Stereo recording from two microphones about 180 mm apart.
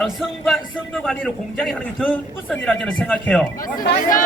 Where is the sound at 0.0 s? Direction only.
Centre (ahead or behind).